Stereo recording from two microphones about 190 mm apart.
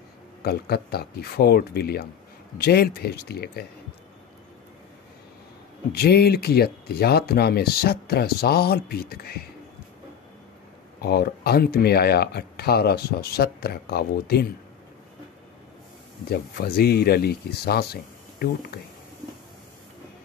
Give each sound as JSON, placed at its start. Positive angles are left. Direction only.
{"t": 0.4, "sound": "speech", "side_deg": 55}
{"t": 5.9, "sound": "speech", "side_deg": 55}
{"t": 11.0, "sound": "speech", "side_deg": 55}
{"t": 16.3, "sound": "speech", "side_deg": 55}